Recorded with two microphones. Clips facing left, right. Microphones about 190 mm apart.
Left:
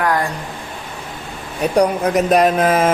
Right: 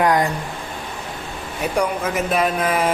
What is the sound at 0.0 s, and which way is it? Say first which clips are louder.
Speech: right 1 dB; 20° right (ahead or behind).